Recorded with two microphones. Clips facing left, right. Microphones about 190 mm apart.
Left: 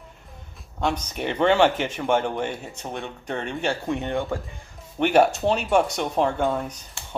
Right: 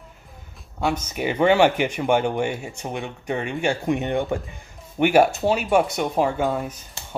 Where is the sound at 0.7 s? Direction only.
5° right (ahead or behind).